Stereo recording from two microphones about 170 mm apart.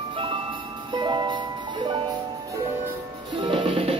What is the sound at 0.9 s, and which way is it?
Music, 25° right (ahead or behind).